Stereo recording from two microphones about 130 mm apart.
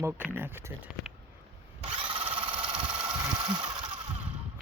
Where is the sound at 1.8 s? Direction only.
40° right (ahead or behind).